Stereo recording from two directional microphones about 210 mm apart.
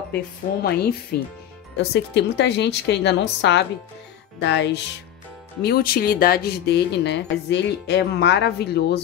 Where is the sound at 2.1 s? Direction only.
55° left (ahead or behind).